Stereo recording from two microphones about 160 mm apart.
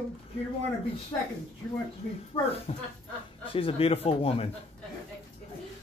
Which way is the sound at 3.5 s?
35° left (ahead or behind).